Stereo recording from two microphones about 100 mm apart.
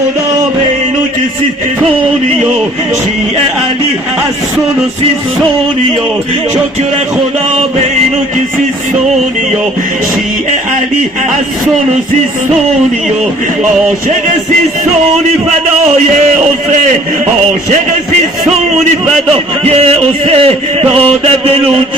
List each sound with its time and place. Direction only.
19.3 s speech: 75° right (ahead or behind)
20.9 s chant: 75° right (ahead or behind)